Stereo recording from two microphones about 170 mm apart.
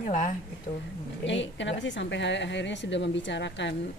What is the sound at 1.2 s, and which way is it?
A woman's voice, 90° left.